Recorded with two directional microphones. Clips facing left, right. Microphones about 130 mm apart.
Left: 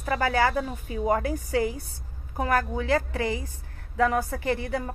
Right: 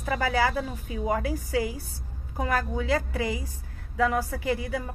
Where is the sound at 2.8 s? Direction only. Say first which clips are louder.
Left 2 dB; 15° right (ahead or behind).